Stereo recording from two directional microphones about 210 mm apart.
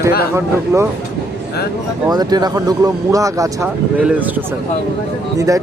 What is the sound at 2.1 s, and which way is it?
Speech, 20° right (ahead or behind).